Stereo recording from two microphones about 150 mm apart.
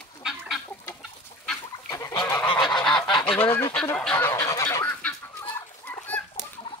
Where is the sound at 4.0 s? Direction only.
10° left (ahead or behind).